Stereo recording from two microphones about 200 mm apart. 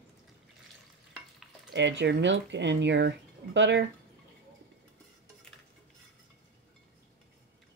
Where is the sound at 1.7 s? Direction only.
60° right (ahead or behind).